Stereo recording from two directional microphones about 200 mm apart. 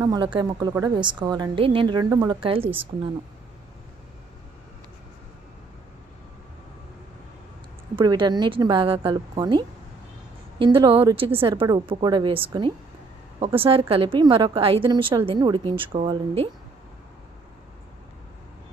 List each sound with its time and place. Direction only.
0.0 s a woman's voice: 20° right (ahead or behind)
7.9 s a woman's voice: 20° right (ahead or behind)